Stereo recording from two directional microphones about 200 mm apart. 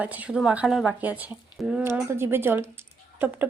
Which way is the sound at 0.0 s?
5° right (ahead or behind).